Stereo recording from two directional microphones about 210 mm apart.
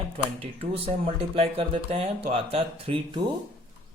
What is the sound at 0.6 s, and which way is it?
Speech, 30° right (ahead or behind).